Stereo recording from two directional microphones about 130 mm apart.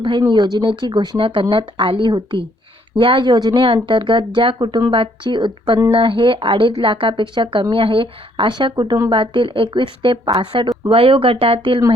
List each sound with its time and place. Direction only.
0.2 s speech: 35° right (ahead or behind)